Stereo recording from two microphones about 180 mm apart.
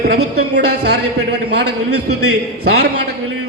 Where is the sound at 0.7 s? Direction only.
70° right (ahead or behind).